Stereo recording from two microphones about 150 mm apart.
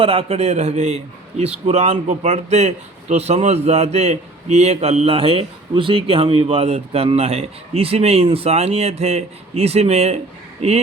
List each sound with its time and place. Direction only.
0.0 s a man's voice: 40° right (ahead or behind)